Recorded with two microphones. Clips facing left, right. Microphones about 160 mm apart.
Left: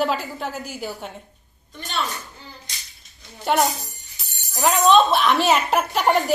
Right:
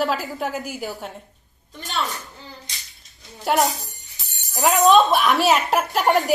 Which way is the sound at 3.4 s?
Centre (ahead or behind).